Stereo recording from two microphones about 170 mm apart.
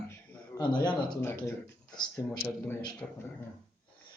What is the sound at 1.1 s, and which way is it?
Speech, 15° left (ahead or behind).